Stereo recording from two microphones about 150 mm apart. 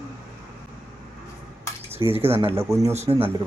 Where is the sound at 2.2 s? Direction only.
40° right (ahead or behind).